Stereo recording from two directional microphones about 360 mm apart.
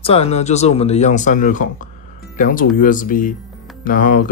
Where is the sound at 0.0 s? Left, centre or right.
Centre.